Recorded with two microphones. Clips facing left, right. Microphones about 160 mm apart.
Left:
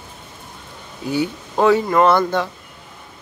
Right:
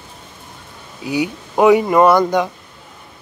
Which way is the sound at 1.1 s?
15° right (ahead or behind).